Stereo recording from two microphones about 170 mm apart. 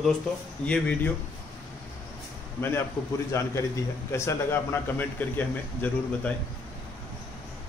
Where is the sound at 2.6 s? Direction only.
15° left (ahead or behind).